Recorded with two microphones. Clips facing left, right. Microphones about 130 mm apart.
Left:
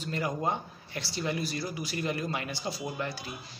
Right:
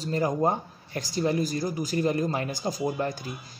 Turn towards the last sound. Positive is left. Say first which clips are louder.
# right 7 dB
turn(degrees=-45)  # may be behind; listen again after turning